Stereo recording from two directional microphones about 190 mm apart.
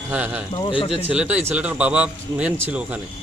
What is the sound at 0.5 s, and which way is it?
Speech, 25° left (ahead or behind).